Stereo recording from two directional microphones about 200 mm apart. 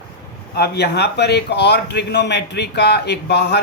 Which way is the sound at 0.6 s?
55° left (ahead or behind).